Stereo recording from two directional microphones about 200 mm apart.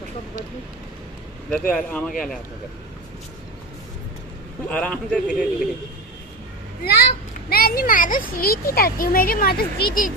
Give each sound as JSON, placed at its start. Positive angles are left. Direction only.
{"t": 1.5, "sound": "a man's voice", "side_deg": 0}
{"t": 4.6, "sound": "a man's voice", "side_deg": 5}
{"t": 7.4, "sound": "speech", "side_deg": 50}